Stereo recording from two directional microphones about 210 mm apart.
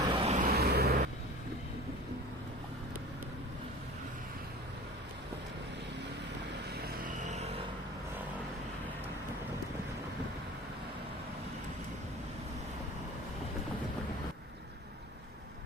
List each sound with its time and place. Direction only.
0.1 s vehicle: 30° right (ahead or behind); by 0.9 s 45° right (ahead or behind)
6.8 s vehicle: 45° right (ahead or behind)